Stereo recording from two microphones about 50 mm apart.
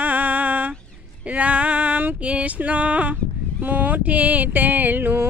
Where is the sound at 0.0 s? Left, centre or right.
Right.